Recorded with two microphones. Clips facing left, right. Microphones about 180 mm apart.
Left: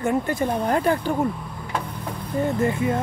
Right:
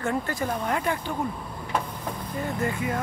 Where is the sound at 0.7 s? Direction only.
40° left (ahead or behind).